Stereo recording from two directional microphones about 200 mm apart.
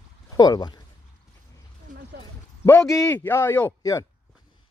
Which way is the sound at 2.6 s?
15° left (ahead or behind).